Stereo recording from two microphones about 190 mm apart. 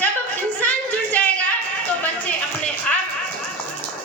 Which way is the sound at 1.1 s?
10° left (ahead or behind).